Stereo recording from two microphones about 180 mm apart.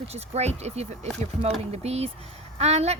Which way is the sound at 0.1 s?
35° right (ahead or behind).